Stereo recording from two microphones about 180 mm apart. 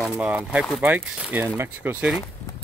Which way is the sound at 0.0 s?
5° right (ahead or behind).